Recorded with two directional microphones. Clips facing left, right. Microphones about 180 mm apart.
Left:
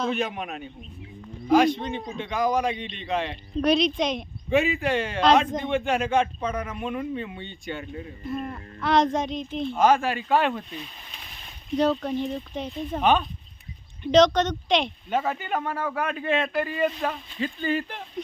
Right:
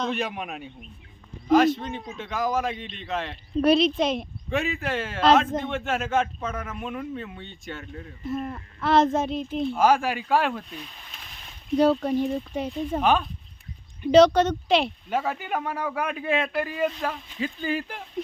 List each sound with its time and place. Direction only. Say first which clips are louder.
0.0 s a woman's voice: left 1 dB; centre (ahead or behind)